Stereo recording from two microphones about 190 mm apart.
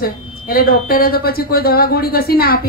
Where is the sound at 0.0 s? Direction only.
50° left (ahead or behind).